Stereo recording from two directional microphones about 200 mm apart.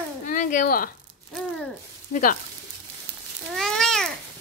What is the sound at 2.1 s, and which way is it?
Speech, 40° left (ahead or behind).